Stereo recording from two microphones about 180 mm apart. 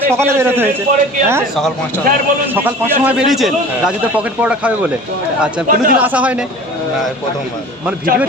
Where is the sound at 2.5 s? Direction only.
10° right (ahead or behind).